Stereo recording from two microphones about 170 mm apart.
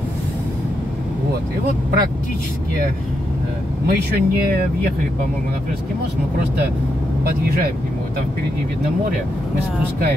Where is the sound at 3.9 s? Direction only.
60° right (ahead or behind).